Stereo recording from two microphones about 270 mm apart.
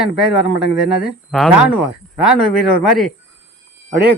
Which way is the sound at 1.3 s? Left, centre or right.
Centre.